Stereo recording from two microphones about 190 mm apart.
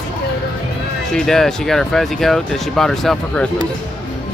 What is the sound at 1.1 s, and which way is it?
Speech, 5° left (ahead or behind).